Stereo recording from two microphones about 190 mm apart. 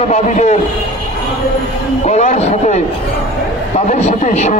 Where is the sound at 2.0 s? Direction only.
35° left (ahead or behind).